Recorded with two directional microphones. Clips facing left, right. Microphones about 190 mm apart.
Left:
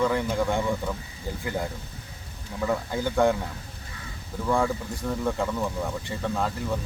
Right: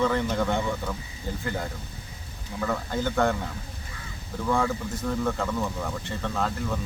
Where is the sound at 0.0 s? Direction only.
10° left (ahead or behind).